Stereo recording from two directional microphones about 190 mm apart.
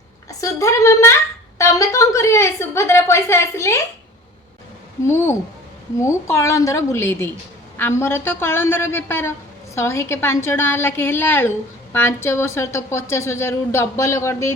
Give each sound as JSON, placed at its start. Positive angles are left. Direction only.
{"t": 0.3, "sound": "a woman's voice", "side_deg": 15}
{"t": 5.0, "sound": "a woman's voice", "side_deg": 15}